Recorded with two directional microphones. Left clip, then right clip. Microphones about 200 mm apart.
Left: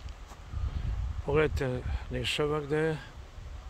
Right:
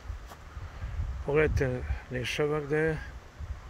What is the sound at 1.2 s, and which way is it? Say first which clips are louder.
Speech: right 1 dB; 15° left (ahead or behind).